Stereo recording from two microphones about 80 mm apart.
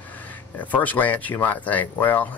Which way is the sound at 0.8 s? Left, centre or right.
Centre.